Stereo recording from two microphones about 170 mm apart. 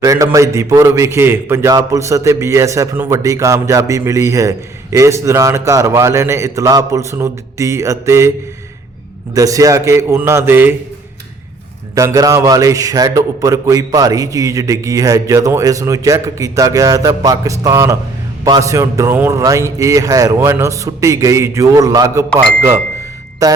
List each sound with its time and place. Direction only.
0.0 s a man's voice: 20° right (ahead or behind)
9.3 s a man's voice: 20° right (ahead or behind)
11.9 s a man's voice: 20° right (ahead or behind)
23.4 s a man's voice: 20° right (ahead or behind)